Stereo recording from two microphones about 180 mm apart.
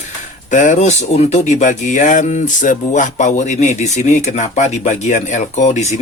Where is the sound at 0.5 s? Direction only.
45° left (ahead or behind).